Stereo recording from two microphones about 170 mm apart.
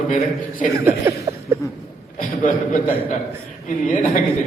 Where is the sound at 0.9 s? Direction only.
15° right (ahead or behind).